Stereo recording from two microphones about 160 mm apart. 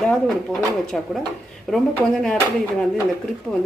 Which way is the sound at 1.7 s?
5° left (ahead or behind).